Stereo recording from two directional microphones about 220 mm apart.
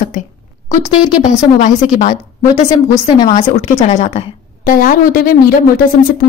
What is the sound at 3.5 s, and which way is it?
A woman's voice, 30° left (ahead or behind).